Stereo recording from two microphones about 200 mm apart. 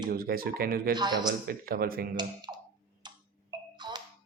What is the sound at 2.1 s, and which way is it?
Speech, 20° right (ahead or behind).